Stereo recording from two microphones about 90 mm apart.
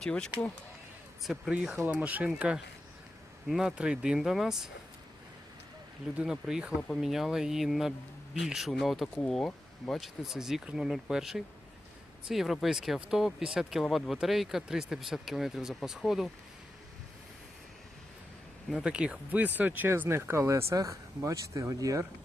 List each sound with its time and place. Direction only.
0.0 s speech: 10° left (ahead or behind)
1.2 s speech: centre (ahead or behind)
3.5 s speech: 5° right (ahead or behind)
6.1 s speech: 5° right (ahead or behind)
18.7 s speech: 10° right (ahead or behind); by 22.0 s 40° right (ahead or behind)